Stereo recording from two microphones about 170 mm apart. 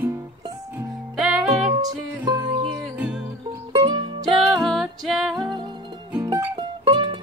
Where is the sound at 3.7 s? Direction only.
25° right (ahead or behind).